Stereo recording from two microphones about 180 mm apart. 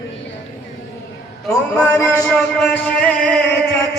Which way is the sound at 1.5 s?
5° left (ahead or behind).